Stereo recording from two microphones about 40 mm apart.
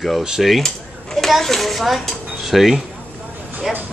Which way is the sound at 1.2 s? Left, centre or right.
Centre.